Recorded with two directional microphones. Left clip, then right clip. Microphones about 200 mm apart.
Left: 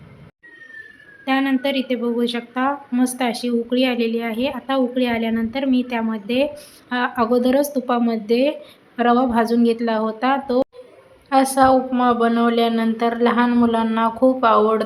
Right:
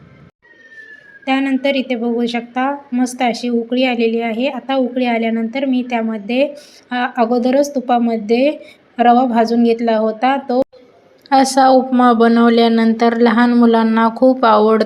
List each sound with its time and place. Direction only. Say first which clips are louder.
1.2 s speech: right 3 dB; 10° right (ahead or behind)
11.3 s a woman's voice: right 4 dB; 25° right (ahead or behind)